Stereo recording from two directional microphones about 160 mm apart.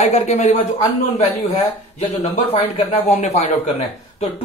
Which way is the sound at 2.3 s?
35° left (ahead or behind).